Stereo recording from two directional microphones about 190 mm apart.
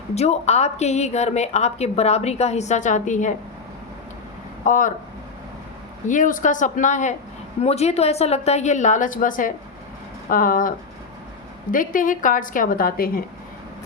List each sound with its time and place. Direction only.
0.1 s a woman's voice: 35° left (ahead or behind)
4.6 s a woman's voice: 45° left (ahead or behind)
6.1 s a woman's voice: 45° left (ahead or behind)